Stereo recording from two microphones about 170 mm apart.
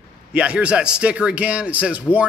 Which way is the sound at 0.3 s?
5° right (ahead or behind).